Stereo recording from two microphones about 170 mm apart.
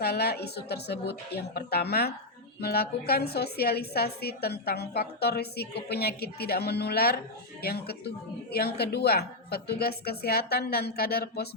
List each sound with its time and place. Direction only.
0.0 s a woman's voice: 70° left (ahead or behind)